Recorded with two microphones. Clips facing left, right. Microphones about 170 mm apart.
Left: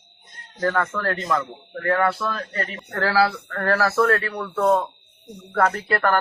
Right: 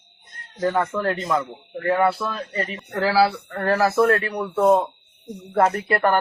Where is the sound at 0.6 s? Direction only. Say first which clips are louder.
Right 2 dB; 15° right (ahead or behind).